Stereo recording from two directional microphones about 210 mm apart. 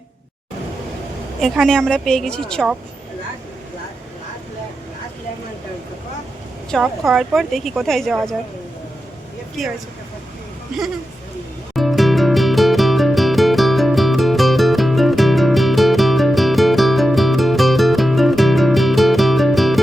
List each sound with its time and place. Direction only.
1.4 s a woman's voice: centre (ahead or behind)
6.7 s a woman's voice: centre (ahead or behind)
11.7 s music: centre (ahead or behind)